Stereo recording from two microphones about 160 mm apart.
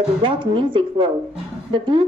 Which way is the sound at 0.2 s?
30° right (ahead or behind).